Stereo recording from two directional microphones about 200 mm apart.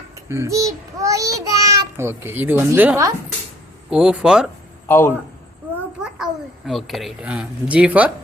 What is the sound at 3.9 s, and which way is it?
Speech, 5° right (ahead or behind).